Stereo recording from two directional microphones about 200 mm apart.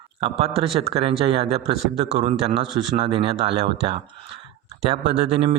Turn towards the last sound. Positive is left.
turn(degrees=-30)  # may be behind; listen again after turning